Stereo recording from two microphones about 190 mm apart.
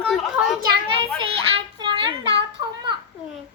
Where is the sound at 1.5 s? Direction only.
25° right (ahead or behind).